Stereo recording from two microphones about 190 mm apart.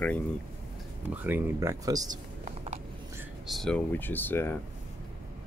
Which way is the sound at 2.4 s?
35° right (ahead or behind).